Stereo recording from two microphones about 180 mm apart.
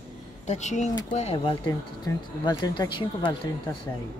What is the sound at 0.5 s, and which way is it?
Speech, 40° left (ahead or behind).